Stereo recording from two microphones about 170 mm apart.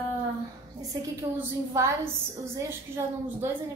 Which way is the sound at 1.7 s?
20° right (ahead or behind).